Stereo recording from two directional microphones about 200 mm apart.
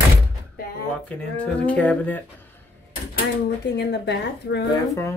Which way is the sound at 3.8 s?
55° left (ahead or behind).